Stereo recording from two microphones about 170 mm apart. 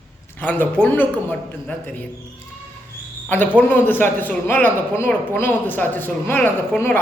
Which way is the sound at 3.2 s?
10° left (ahead or behind).